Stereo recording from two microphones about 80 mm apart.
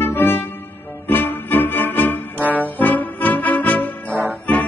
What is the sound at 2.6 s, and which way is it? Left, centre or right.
Trombone, left.